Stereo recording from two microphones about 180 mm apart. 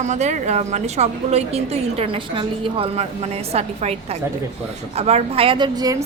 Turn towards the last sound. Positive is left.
turn(degrees=-20)  # may be behind; listen again after turning